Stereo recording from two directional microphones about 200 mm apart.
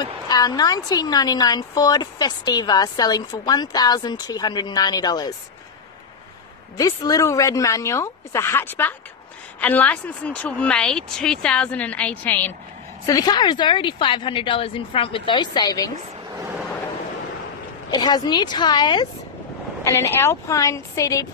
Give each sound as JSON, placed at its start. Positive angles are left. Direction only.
{"t": 0.0, "sound": "a woman's voice", "side_deg": 20}
{"t": 6.8, "sound": "a woman's voice", "side_deg": 20}
{"t": 17.9, "sound": "a woman's voice", "side_deg": 20}